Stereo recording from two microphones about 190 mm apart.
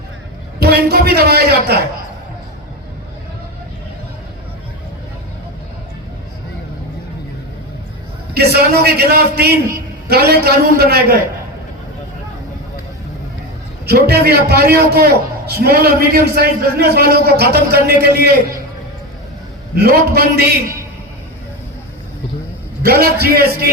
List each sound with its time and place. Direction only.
0.6 s a sound: 55° right (ahead or behind)
8.5 s a man's voice: 55° right (ahead or behind)
13.8 s a man's voice: 55° right (ahead or behind)
19.7 s a man's voice: 55° right (ahead or behind)
22.8 s a man's voice: 55° right (ahead or behind)